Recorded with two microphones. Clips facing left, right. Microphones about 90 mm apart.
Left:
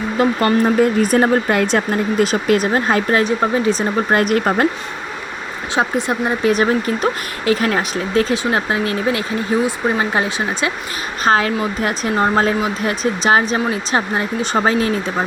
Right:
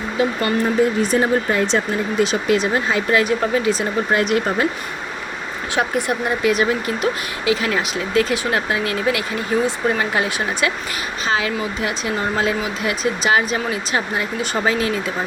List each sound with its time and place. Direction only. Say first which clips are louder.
0.2 s speech: left 4 dB; 50° left (ahead or behind)
3.2 s speech: left 2 dB; 30° left (ahead or behind)
4.2 s speech: left 3 dB; 50° left (ahead or behind)
5.7 s speech: left 2 dB; 25° left (ahead or behind)
6.5 s speech: left 3 dB; 40° left (ahead or behind)
11.2 s speech: left 6 dB; 45° left (ahead or behind)